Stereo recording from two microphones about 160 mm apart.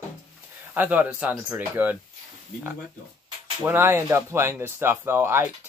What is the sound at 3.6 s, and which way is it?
Speech, 15° right (ahead or behind).